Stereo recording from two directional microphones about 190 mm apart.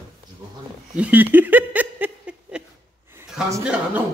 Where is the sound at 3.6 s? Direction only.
5° right (ahead or behind).